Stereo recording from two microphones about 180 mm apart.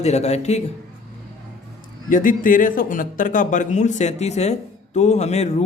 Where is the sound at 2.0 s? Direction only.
50° left (ahead or behind).